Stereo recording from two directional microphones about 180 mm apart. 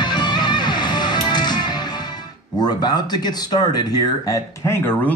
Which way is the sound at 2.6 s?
25° left (ahead or behind).